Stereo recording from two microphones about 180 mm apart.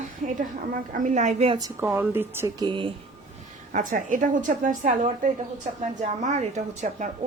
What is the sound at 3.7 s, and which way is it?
A woman's voice, 45° right (ahead or behind).